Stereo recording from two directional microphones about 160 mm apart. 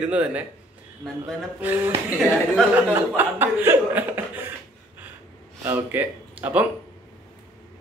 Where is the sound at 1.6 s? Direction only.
10° right (ahead or behind).